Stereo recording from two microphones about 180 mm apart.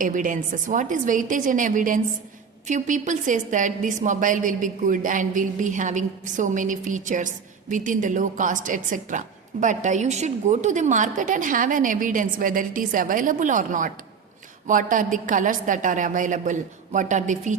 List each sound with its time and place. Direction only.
0.0 s a woman's voice: 45° right (ahead or behind)